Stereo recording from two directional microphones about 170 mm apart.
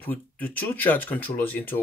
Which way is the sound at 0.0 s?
10° left (ahead or behind).